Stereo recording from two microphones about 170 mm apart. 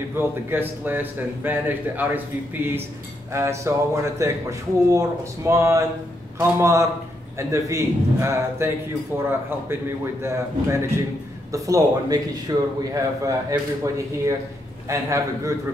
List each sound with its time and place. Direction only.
0.5 s speech: 10° right (ahead or behind)